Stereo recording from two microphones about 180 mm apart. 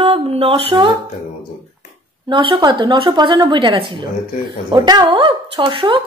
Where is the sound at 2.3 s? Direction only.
25° right (ahead or behind).